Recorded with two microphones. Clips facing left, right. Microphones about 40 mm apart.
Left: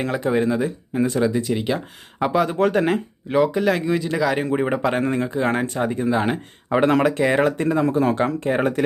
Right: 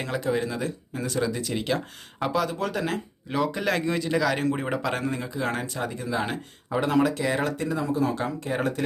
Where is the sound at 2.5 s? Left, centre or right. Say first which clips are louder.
Left 9 dB; left.